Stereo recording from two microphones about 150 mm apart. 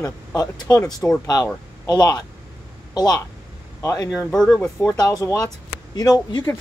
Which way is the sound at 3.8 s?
25° left (ahead or behind).